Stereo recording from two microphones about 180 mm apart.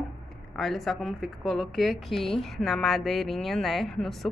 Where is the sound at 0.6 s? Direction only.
Centre (ahead or behind).